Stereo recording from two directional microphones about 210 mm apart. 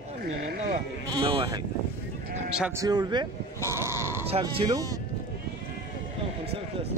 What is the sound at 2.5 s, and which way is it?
Speech, 5° right (ahead or behind).